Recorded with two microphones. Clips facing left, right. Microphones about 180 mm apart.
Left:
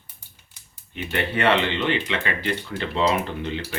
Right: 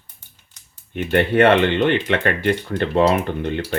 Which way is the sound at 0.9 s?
55° right (ahead or behind).